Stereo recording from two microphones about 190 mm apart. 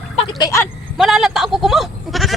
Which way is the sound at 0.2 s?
25° left (ahead or behind).